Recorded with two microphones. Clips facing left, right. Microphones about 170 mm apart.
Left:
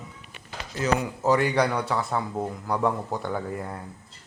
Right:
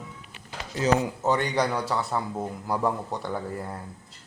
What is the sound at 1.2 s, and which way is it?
Speech, 5° left (ahead or behind).